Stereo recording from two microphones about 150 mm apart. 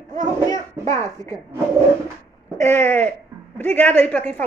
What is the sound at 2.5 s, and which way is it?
Speech, 15° left (ahead or behind).